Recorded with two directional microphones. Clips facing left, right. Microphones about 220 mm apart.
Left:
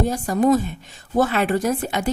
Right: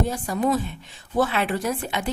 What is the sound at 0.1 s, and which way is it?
A woman's voice, 45° left (ahead or behind).